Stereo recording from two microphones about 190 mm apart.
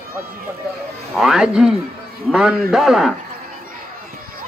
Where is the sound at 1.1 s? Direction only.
Centre (ahead or behind).